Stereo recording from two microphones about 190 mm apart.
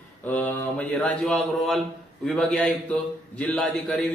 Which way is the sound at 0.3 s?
5° left (ahead or behind).